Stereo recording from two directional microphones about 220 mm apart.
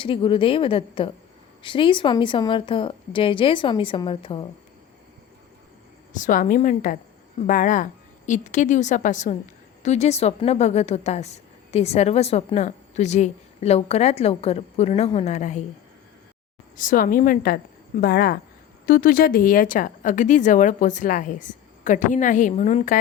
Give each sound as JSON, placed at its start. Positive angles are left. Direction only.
{"t": 0.0, "sound": "a woman's voice", "side_deg": 25}
{"t": 6.1, "sound": "a woman's voice", "side_deg": 35}
{"t": 16.7, "sound": "speech", "side_deg": 40}